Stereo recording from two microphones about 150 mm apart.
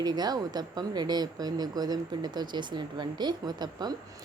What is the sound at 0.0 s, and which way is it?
Speech, 25° right (ahead or behind).